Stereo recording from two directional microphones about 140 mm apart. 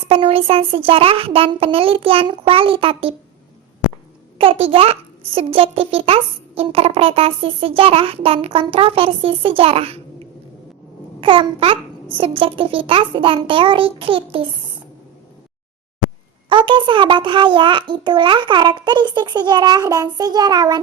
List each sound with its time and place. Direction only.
0.1 s a child's voice: 40° right (ahead or behind)
4.4 s a child's voice: 40° right (ahead or behind)
16.5 s a child's voice: 35° right (ahead or behind)